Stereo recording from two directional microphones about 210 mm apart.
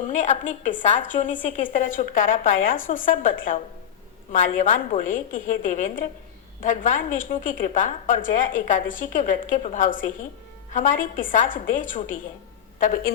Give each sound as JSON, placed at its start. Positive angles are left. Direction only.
{"t": 0.1, "sound": "a woman's voice", "side_deg": 35}